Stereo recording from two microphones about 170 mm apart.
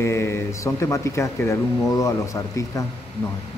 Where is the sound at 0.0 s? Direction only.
15° left (ahead or behind).